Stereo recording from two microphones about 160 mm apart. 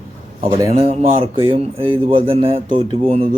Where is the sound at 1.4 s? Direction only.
35° right (ahead or behind).